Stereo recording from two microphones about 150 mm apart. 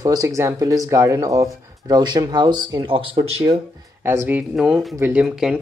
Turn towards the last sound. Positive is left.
turn(degrees=-5)  # may be behind; listen again after turning